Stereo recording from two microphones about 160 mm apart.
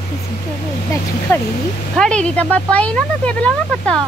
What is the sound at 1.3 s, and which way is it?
Speech, 15° left (ahead or behind).